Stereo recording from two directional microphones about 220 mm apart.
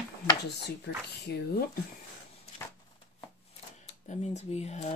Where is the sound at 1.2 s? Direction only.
50° left (ahead or behind).